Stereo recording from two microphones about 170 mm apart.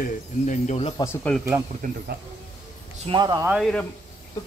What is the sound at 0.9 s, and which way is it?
Speech, 15° left (ahead or behind).